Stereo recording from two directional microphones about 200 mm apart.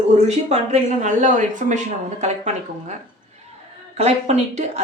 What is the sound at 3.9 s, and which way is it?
Speech, 35° right (ahead or behind).